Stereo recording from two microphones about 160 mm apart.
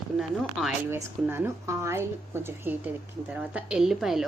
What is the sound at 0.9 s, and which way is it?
A woman's voice, 15° right (ahead or behind).